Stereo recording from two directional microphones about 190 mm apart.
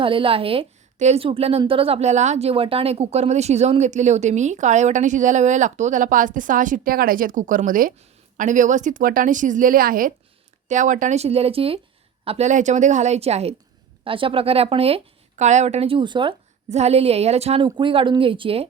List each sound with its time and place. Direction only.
0.0 s a woman's voice: 30° right (ahead or behind)
16.6 s a woman's voice: 35° right (ahead or behind)